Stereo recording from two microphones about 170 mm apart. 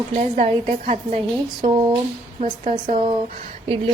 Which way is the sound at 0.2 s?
40° right (ahead or behind).